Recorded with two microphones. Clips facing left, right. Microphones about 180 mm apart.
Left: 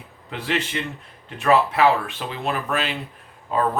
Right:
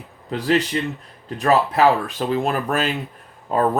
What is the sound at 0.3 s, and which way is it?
Speech, 40° right (ahead or behind).